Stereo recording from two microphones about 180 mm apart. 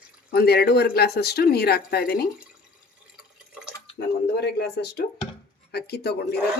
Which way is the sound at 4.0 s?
65° left (ahead or behind).